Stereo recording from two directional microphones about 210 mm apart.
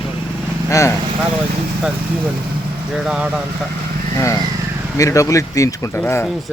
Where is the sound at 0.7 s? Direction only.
15° left (ahead or behind).